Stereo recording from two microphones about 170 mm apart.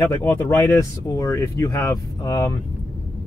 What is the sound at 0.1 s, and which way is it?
Speech, 20° left (ahead or behind).